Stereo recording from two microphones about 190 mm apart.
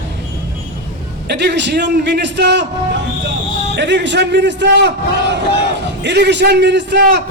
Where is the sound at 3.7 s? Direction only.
65° right (ahead or behind).